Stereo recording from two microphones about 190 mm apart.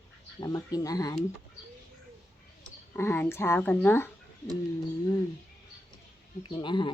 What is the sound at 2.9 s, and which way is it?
Speech, 10° left (ahead or behind).